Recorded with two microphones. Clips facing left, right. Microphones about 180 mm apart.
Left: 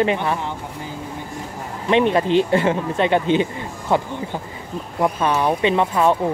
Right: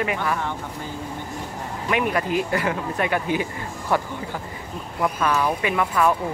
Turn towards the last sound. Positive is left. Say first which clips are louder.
# left 4 dB
turn(degrees=25)  # may be behind; listen again after turning